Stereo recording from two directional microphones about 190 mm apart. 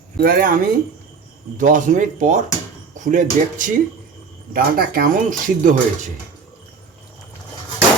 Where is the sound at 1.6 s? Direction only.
45° right (ahead or behind).